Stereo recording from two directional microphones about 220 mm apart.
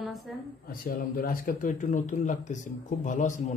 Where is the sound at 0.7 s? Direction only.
40° left (ahead or behind).